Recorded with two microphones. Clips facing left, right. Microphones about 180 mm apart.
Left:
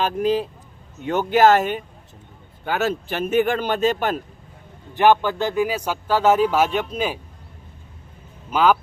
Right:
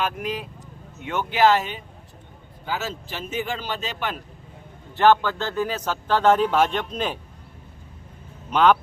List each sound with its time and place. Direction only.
0.0 s speech: 30° left (ahead or behind)
4.9 s a man's voice: 15° left (ahead or behind)
8.4 s speech: 5° left (ahead or behind)